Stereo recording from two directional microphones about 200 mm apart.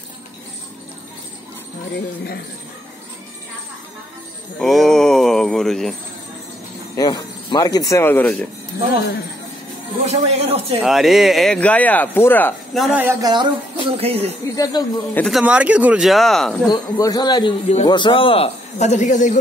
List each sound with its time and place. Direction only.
4.6 s speech: centre (ahead or behind)
7.0 s speech: 20° left (ahead or behind)
10.0 s speech: 35° right (ahead or behind)
10.8 s speech: centre (ahead or behind)
13.2 s a woman's voice: 20° right (ahead or behind)
14.5 s speech: 15° left (ahead or behind)
15.2 s speech: 5° right (ahead or behind)
16.6 s a man's voice: 20° left (ahead or behind); by 19.3 s 40° left (ahead or behind)